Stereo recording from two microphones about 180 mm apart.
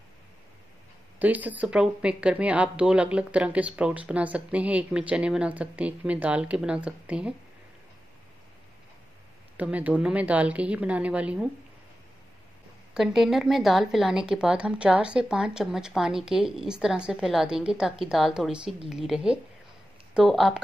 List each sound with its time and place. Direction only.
1.2 s speech: 10° right (ahead or behind)
9.6 s speech: 10° right (ahead or behind)
12.9 s a woman's voice: centre (ahead or behind)